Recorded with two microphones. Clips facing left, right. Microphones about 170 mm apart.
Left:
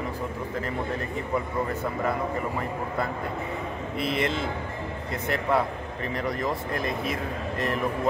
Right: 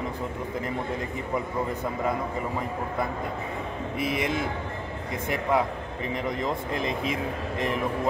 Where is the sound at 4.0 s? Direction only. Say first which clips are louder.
Left 1 dB; 15° right (ahead or behind).